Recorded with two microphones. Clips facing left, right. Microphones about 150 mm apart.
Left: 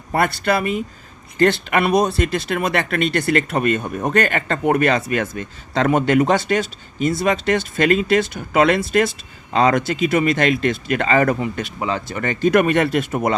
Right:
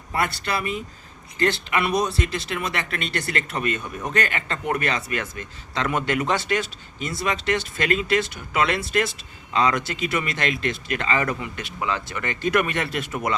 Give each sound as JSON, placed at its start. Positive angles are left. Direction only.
{"t": 0.1, "sound": "speech", "side_deg": 55}